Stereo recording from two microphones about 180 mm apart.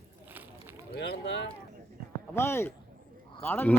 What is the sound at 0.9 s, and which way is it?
Boat, 75° left (ahead or behind).